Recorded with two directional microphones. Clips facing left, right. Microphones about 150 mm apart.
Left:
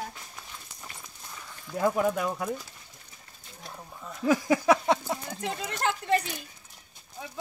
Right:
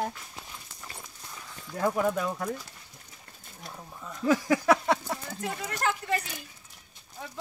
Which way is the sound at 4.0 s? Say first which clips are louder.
Even; 10° left (ahead or behind).